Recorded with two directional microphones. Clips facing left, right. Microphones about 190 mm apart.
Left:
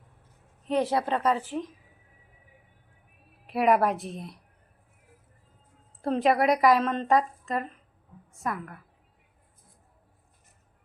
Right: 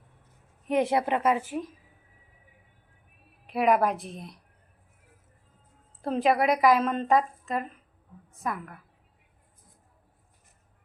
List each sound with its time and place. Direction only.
0.7 s a woman's voice: 20° right (ahead or behind)
3.4 s a woman's voice: centre (ahead or behind)
6.0 s a woman's voice: centre (ahead or behind)